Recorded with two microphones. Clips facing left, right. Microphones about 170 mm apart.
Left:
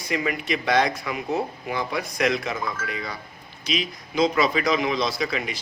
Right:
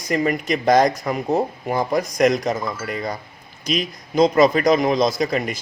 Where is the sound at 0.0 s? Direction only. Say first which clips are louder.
Right 6 dB; 40° right (ahead or behind).